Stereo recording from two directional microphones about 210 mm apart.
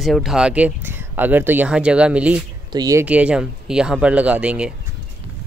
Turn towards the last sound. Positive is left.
turn(degrees=-5)  # may be behind; listen again after turning